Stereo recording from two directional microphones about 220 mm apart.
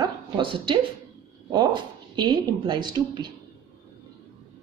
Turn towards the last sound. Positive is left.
turn(degrees=-20)  # may be behind; listen again after turning